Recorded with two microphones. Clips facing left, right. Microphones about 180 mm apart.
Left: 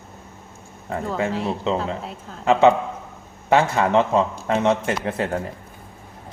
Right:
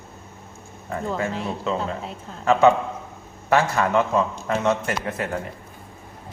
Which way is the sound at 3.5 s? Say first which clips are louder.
Left 2 dB; 20° left (ahead or behind).